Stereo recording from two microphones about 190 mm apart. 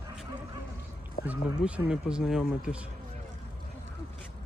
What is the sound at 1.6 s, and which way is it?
Speech, 5° right (ahead or behind).